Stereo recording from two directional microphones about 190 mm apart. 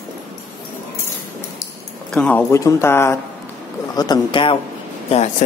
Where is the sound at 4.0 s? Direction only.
25° left (ahead or behind).